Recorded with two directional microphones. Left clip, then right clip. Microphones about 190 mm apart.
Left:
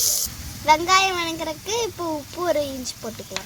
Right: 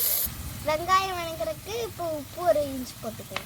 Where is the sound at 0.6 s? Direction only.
45° left (ahead or behind).